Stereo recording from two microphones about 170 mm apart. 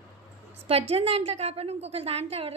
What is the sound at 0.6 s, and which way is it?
A woman's voice, 35° right (ahead or behind).